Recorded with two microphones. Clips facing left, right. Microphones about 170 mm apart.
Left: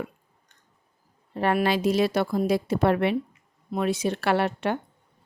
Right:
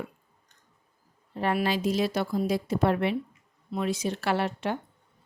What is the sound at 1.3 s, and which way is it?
Speech, 65° left (ahead or behind).